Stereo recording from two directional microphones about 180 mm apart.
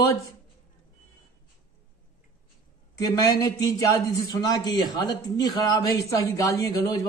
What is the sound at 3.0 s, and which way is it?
A man's voice, 20° left (ahead or behind).